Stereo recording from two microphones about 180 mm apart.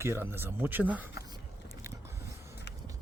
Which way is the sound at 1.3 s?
15° right (ahead or behind).